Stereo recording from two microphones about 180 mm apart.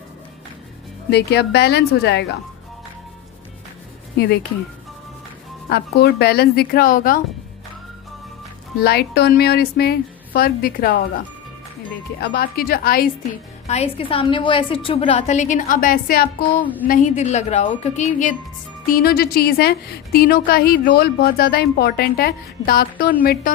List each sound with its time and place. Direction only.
1.1 s a woman's voice: 65° left (ahead or behind)
5.6 s a woman's voice: 60° left (ahead or behind)
8.8 s a woman's voice: 60° left (ahead or behind)
12.2 s a woman's voice: 65° left (ahead or behind)
13.7 s a woman's voice: 35° left (ahead or behind)
18.9 s a woman's voice: 55° left (ahead or behind)